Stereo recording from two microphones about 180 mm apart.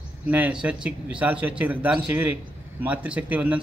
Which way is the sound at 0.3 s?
5° right (ahead or behind).